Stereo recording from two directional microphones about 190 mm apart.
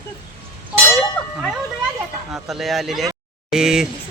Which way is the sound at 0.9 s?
15° left (ahead or behind).